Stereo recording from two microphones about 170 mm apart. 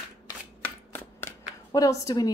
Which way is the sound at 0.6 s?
10° left (ahead or behind).